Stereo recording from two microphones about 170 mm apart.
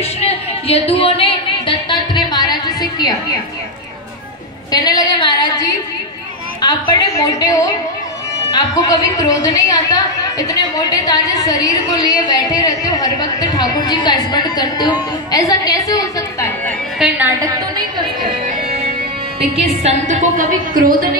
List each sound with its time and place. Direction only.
0.2 s a sound: 35° left (ahead or behind)
4.7 s a woman's voice: 25° left (ahead or behind)
17.0 s a woman's voice: 5° right (ahead or behind)
18.7 s music: 35° right (ahead or behind)
19.5 s a woman's voice: 40° right (ahead or behind); by 21.2 s 55° right (ahead or behind)